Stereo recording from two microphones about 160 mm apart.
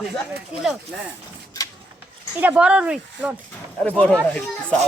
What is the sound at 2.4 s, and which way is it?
Speech, 10° right (ahead or behind).